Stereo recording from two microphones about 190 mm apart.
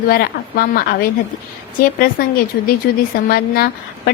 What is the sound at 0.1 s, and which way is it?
Speech, 50° left (ahead or behind).